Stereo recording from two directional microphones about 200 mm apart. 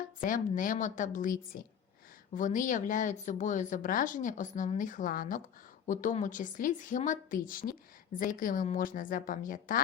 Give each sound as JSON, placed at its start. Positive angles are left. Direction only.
{"t": 0.2, "sound": "speech", "side_deg": 40}